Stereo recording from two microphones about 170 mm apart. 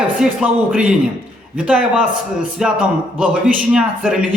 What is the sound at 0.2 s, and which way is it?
A man's voice, 5° right (ahead or behind).